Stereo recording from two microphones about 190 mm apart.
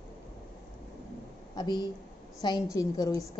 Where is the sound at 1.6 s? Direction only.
20° left (ahead or behind).